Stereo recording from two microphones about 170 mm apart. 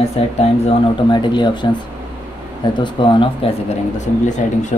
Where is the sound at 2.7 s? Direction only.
30° left (ahead or behind).